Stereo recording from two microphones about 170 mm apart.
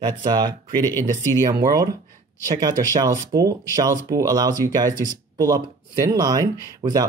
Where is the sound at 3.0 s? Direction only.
20° right (ahead or behind).